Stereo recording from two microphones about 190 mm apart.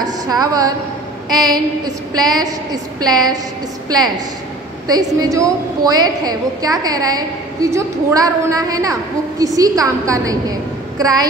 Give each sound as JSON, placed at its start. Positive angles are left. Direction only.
{"t": 0.0, "sound": "a woman's voice", "side_deg": -20}
{"t": 4.8, "sound": "a woman's voice", "side_deg": -20}